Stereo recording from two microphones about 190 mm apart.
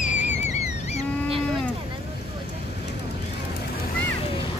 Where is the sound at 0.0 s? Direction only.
40° left (ahead or behind).